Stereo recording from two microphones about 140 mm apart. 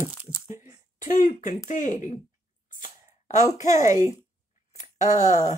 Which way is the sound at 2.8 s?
60° left (ahead or behind).